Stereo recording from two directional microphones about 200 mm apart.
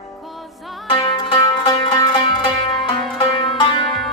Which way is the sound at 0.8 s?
20° left (ahead or behind).